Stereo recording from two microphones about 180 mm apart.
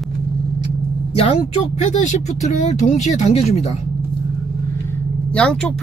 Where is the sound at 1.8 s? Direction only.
40° left (ahead or behind).